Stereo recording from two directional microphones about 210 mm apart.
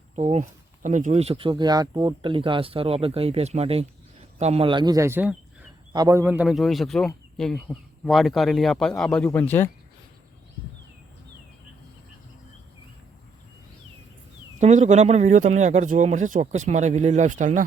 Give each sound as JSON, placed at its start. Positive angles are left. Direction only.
{"t": 0.2, "sound": "speech", "side_deg": -30}
{"t": 14.6, "sound": "speech", "side_deg": -35}